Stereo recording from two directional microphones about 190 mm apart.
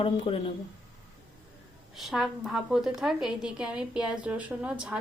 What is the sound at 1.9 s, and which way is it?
A woman's voice, centre (ahead or behind).